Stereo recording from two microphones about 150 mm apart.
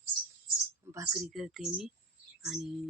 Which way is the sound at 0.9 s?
20° right (ahead or behind).